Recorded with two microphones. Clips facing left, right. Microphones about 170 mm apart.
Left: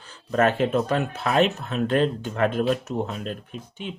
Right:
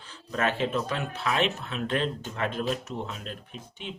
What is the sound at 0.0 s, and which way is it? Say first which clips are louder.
Speech: left 7 dB; 45° left (ahead or behind).